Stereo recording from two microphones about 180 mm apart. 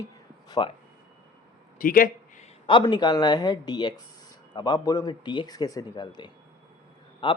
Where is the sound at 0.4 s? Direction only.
20° left (ahead or behind).